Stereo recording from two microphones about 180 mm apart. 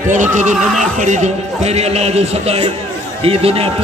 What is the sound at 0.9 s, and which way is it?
A man's voice, 40° right (ahead or behind).